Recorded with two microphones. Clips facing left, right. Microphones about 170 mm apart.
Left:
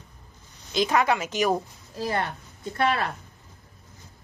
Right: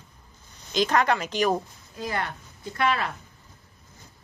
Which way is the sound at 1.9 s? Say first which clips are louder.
Left 3 dB; 30° left (ahead or behind).